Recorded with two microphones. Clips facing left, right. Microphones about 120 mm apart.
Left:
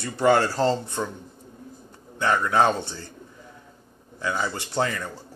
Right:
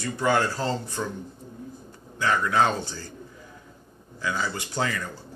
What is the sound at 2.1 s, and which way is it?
Speech, 25° left (ahead or behind).